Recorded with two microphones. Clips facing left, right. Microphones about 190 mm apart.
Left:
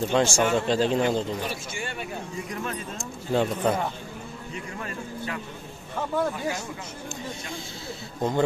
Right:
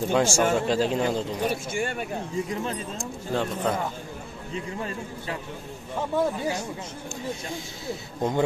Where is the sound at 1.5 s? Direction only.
50° right (ahead or behind).